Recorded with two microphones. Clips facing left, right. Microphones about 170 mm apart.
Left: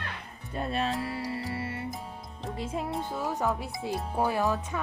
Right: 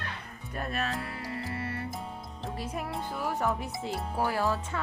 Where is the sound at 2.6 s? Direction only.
25° left (ahead or behind).